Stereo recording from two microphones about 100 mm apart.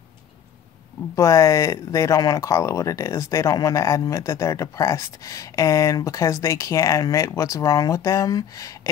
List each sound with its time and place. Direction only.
1.1 s speech: 30° left (ahead or behind)